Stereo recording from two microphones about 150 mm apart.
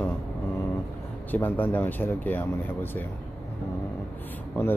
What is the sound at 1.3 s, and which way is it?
Speech, 10° left (ahead or behind).